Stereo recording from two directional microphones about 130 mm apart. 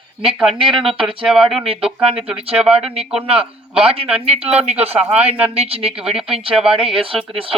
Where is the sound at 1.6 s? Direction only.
45° right (ahead or behind).